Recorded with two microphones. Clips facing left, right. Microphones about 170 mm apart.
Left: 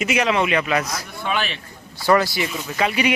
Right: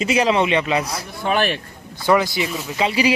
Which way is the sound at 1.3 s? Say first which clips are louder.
Right 6 dB; 55° right (ahead or behind).